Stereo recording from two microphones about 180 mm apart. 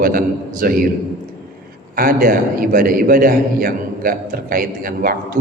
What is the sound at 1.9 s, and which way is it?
A man's voice, 50° right (ahead or behind).